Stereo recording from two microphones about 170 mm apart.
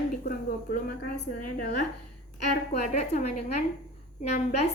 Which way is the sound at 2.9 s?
45° left (ahead or behind).